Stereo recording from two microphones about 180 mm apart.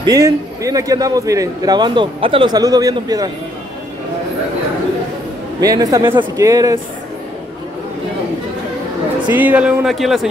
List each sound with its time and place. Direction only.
0.0 s a man's voice: 20° right (ahead or behind)
5.6 s a man's voice: 20° right (ahead or behind)
9.3 s speech: 10° right (ahead or behind)